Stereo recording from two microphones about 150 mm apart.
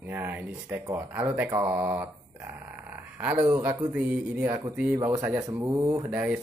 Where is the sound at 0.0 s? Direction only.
15° right (ahead or behind).